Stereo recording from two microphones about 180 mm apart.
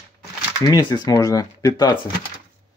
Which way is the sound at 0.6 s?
25° left (ahead or behind).